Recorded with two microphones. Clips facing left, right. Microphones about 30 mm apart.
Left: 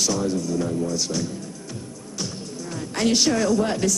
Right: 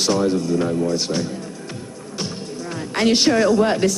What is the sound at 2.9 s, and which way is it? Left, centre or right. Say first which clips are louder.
Speech: right 4 dB; right.